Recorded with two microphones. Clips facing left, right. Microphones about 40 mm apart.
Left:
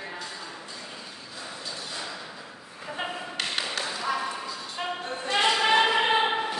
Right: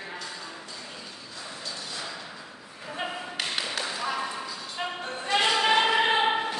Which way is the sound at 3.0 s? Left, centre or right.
Centre.